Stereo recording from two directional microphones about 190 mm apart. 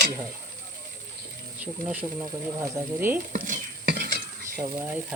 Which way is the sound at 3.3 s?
45° right (ahead or behind).